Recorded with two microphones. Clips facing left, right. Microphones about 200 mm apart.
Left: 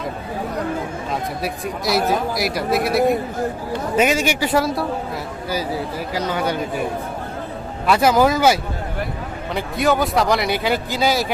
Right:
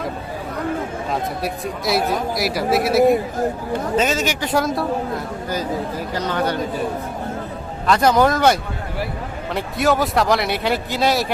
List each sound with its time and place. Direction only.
1.4 s speech: centre (ahead or behind)
3.9 s a man's voice: 10° left (ahead or behind)
7.9 s speech: 5° left (ahead or behind)
9.6 s speech: centre (ahead or behind)